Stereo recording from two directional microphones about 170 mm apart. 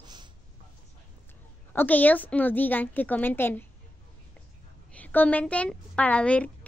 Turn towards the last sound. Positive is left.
turn(degrees=5)  # may be behind; listen again after turning